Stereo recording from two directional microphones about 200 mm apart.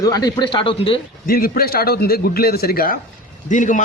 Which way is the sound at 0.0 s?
20° left (ahead or behind).